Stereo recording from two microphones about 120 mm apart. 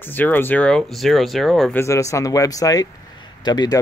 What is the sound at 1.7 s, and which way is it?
Speech, 25° left (ahead or behind).